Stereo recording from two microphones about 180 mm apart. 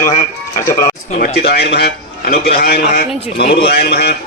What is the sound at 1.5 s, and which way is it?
A man's voice, 65° left (ahead or behind).